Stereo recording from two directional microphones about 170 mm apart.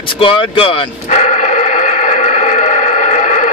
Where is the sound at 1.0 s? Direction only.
45° left (ahead or behind).